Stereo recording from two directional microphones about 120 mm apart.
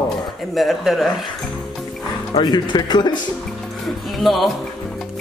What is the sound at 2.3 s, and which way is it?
Speech, 40° left (ahead or behind).